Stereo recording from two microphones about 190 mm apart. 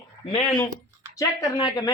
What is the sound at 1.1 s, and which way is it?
Speech, 20° left (ahead or behind).